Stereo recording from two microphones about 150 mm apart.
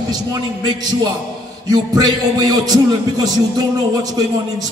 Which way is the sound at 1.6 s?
25° right (ahead or behind).